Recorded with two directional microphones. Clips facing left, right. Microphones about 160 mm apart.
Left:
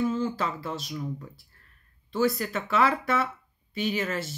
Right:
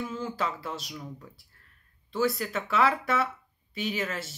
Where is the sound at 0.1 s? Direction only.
5° right (ahead or behind).